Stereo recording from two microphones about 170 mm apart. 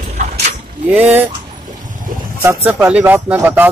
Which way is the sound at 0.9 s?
10° right (ahead or behind).